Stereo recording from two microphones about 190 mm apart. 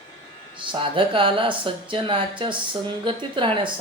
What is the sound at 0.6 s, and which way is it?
Speech, 25° right (ahead or behind).